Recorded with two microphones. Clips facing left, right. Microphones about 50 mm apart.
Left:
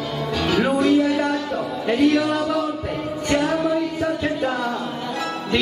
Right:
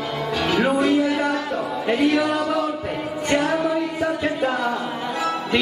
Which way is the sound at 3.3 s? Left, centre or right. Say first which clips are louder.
Even; centre.